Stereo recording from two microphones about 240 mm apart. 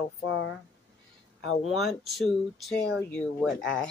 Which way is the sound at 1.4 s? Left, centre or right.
Left.